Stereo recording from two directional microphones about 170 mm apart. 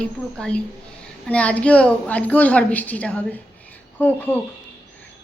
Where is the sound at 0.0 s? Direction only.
5° left (ahead or behind).